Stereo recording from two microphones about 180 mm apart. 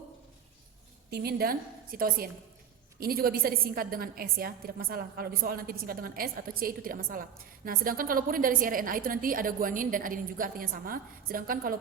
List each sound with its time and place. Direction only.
1.1 s a woman's voice: 60° right (ahead or behind)